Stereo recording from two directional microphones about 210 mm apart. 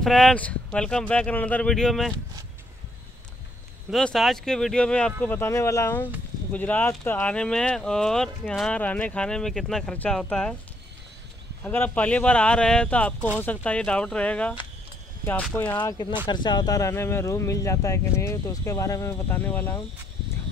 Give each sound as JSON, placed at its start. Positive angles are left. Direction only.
{"t": 0.0, "sound": "speech", "side_deg": 5}
{"t": 3.9, "sound": "speech", "side_deg": 0}
{"t": 11.6, "sound": "speech", "side_deg": 10}
{"t": 15.5, "sound": "speech", "side_deg": 10}
{"t": 15.8, "sound": "speech", "side_deg": 20}